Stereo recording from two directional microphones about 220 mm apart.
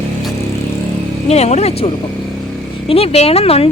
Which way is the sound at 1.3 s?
30° left (ahead or behind).